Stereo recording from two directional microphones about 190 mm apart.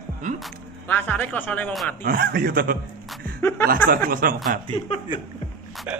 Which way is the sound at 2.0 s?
50° right (ahead or behind).